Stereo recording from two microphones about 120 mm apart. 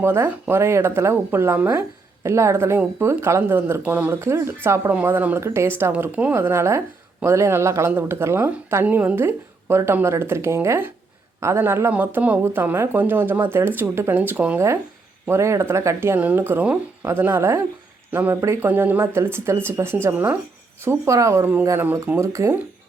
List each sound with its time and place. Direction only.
0.0 s a woman's voice: 20° right (ahead or behind)